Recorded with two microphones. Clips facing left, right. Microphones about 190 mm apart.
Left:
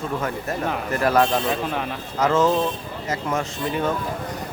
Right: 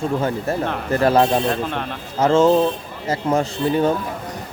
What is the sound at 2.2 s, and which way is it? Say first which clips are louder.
Speech: right 5 dB; 25° right (ahead or behind).